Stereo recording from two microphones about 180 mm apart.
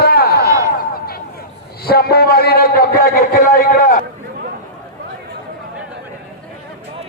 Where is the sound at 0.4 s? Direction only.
20° right (ahead or behind).